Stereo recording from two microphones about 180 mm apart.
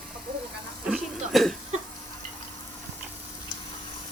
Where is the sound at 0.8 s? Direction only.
Centre (ahead or behind).